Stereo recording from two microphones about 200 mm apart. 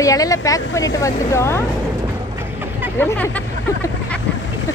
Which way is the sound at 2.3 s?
10° right (ahead or behind).